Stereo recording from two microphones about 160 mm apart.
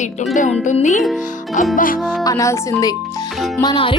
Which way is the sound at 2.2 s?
20° left (ahead or behind).